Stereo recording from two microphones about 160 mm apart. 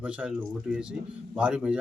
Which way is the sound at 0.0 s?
5° right (ahead or behind).